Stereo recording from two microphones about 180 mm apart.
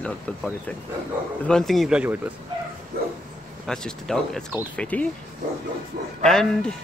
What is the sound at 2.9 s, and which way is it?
Bow-wow, 55° right (ahead or behind).